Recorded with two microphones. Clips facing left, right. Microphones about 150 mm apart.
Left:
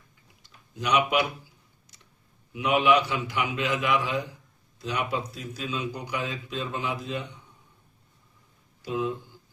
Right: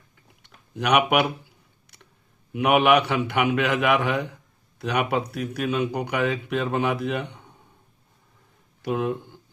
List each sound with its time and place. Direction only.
0.4 s a sound: 65° right (ahead or behind)
2.5 s speech: 65° right (ahead or behind)
8.8 s speech: 60° right (ahead or behind)